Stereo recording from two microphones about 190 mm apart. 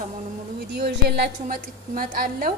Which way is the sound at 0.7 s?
60° right (ahead or behind).